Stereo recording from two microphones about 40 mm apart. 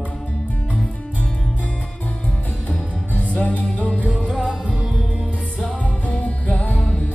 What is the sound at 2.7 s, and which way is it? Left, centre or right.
Music, left.